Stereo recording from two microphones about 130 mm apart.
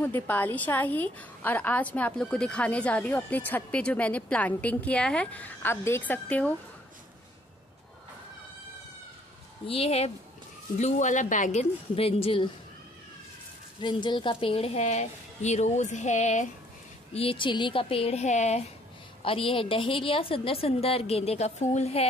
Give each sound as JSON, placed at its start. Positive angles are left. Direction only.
{"t": 0.0, "sound": "a woman's voice", "side_deg": 15}
{"t": 9.7, "sound": "a woman's voice", "side_deg": 50}
{"t": 10.8, "sound": "a woman's voice", "side_deg": 65}
{"t": 11.9, "sound": "a woman's voice", "side_deg": 45}
{"t": 13.7, "sound": "a woman's voice", "side_deg": 35}
{"t": 17.1, "sound": "a woman's voice", "side_deg": 45}
{"t": 19.2, "sound": "a woman's voice", "side_deg": 45}